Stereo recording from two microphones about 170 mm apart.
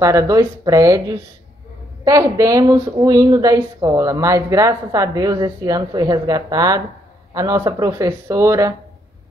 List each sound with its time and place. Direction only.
0.0 s speech: 15° right (ahead or behind)